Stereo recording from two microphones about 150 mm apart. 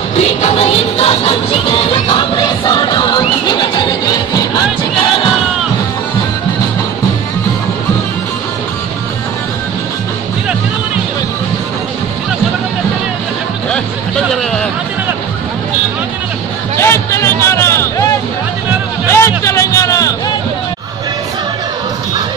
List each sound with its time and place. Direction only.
0.2 s music: 45° left (ahead or behind)
13.7 s hubbub: 5° left (ahead or behind)
16.7 s a sound: 15° left (ahead or behind)
19.1 s music: 20° left (ahead or behind)